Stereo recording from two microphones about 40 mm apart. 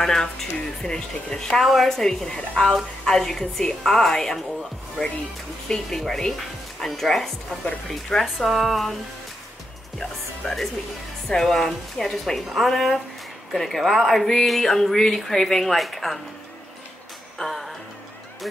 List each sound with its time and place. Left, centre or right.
0.0 s speech: centre
1.6 s a woman's voice: centre
1.9 s speech: centre
5.7 s a woman's voice: centre
10.4 s a woman's voice: centre
17.4 s music: centre